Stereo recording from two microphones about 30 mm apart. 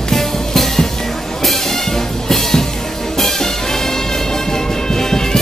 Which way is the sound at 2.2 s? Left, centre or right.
Centre.